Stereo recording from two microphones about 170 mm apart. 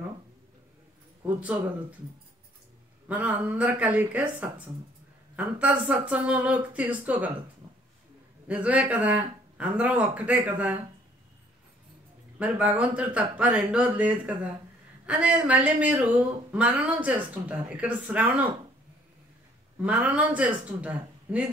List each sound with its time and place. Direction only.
1.2 s speech: 10° right (ahead or behind)
3.1 s speech: 10° right (ahead or behind)
8.5 s speech: 10° right (ahead or behind)
12.4 s speech: 10° right (ahead or behind)
19.8 s speech: 10° right (ahead or behind)